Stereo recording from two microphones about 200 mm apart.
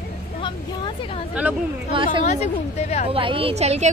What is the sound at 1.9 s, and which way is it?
Speech, 25° right (ahead or behind).